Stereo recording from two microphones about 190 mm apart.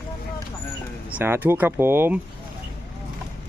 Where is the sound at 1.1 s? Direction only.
10° right (ahead or behind).